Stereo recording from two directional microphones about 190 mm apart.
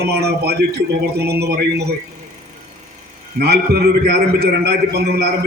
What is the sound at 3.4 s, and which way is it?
A man's voice, 55° right (ahead or behind).